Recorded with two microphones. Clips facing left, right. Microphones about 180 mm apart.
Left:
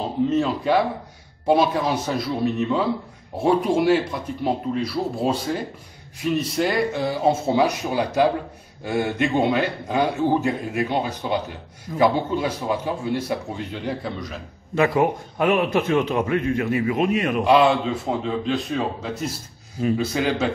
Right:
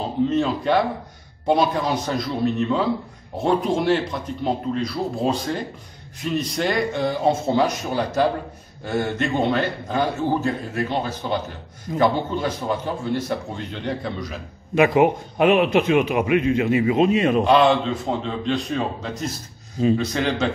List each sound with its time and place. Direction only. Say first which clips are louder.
0.0 s a man's voice: even; centre (ahead or behind)
14.8 s a man's voice: right 3 dB; 20° right (ahead or behind)
17.5 s speech: left 3 dB; 5° left (ahead or behind)